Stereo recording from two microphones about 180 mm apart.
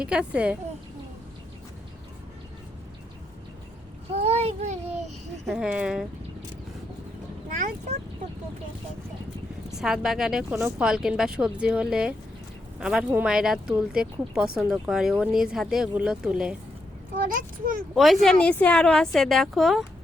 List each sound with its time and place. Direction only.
0.0 s speech: 5° right (ahead or behind)
4.1 s a sound: 35° right (ahead or behind)
5.5 s speech: 5° right (ahead or behind)
9.7 s speech: 5° right (ahead or behind)
17.2 s a child's voice: 50° right (ahead or behind)
17.9 s speech: centre (ahead or behind)